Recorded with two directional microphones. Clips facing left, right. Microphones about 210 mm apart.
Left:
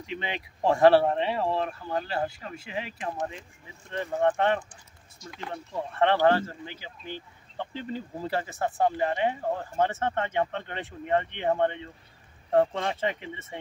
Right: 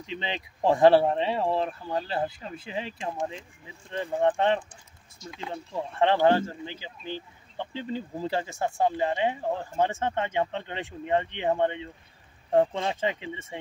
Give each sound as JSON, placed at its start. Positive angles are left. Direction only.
{"t": 0.0, "sound": "speech", "side_deg": -25}
{"t": 3.9, "sound": "speech", "side_deg": -15}